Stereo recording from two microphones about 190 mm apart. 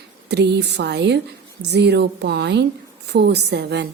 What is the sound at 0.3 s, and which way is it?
A woman's voice, 60° right (ahead or behind).